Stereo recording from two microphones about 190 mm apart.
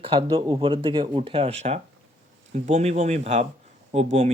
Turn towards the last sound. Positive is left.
turn(degrees=-35)  # may be behind; listen again after turning